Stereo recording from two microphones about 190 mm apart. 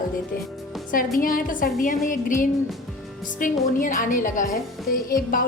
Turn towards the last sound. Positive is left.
turn(degrees=45)  # may be behind; listen again after turning